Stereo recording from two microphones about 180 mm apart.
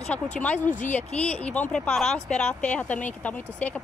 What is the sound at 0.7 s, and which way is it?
Speech, 45° left (ahead or behind).